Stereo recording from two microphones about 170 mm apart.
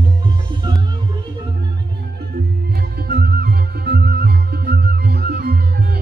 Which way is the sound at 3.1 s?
65° right (ahead or behind).